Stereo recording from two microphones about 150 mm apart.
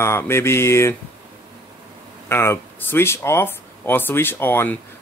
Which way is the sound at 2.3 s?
15° left (ahead or behind).